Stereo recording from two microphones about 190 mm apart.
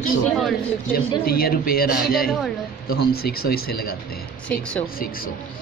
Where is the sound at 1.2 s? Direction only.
50° left (ahead or behind).